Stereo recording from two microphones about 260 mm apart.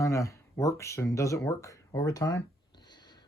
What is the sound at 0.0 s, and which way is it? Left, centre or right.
Speech, centre.